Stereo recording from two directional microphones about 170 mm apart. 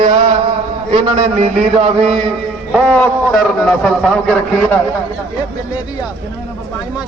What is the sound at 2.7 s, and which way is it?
A man's voice, 5° left (ahead or behind).